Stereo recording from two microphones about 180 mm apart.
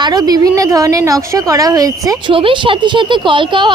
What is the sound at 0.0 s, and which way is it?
A woman's voice, 20° right (ahead or behind).